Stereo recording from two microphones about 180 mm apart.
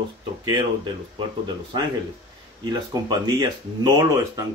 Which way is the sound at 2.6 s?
25° right (ahead or behind).